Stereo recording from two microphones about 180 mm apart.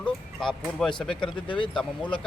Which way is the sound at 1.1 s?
30° left (ahead or behind).